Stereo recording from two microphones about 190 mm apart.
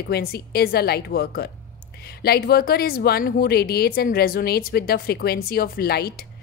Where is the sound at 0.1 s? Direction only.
55° left (ahead or behind).